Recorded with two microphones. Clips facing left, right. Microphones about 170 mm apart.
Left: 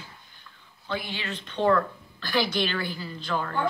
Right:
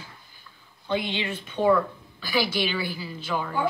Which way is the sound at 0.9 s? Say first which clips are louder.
Right 5 dB; 20° right (ahead or behind).